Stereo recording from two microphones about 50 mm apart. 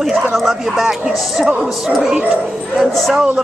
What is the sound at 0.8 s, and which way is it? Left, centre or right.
Speech, centre.